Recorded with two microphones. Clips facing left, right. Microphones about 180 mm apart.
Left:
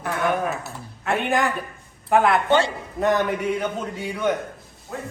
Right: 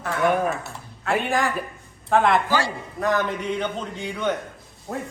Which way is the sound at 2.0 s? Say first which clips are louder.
Left 1 dB; 5° left (ahead or behind).